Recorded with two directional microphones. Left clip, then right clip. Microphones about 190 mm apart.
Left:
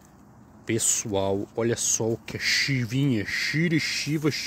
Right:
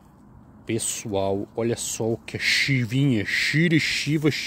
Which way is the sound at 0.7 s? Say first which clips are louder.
Left 2 dB; centre (ahead or behind).